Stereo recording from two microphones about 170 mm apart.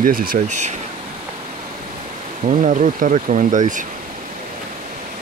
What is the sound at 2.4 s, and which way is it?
Speech, 45° right (ahead or behind).